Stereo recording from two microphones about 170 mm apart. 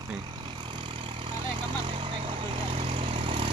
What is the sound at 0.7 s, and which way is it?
Vehicle, 30° right (ahead or behind).